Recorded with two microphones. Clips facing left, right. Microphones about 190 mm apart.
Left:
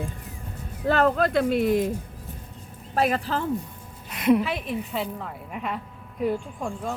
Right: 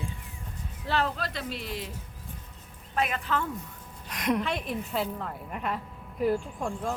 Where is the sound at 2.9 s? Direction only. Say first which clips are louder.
Left 5 dB; 35° left (ahead or behind).